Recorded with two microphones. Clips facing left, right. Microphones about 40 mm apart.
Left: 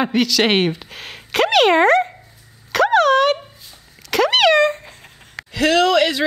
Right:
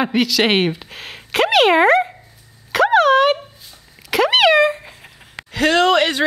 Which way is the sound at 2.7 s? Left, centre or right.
Centre.